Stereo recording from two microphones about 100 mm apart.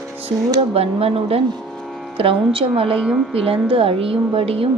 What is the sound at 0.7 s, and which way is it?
Speech, 75° right (ahead or behind).